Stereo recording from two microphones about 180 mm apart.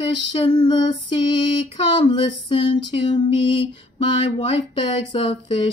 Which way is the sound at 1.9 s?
25° left (ahead or behind).